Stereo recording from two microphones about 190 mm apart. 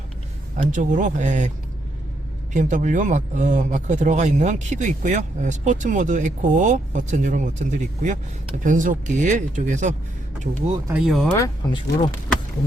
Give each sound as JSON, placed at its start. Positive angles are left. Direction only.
{"t": 0.5, "sound": "speech", "side_deg": -45}
{"t": 10.8, "sound": "speech", "side_deg": -5}
{"t": 11.3, "sound": "speech", "side_deg": 15}